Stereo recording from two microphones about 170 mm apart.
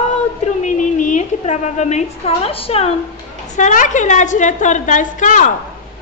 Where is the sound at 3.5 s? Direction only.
50° left (ahead or behind).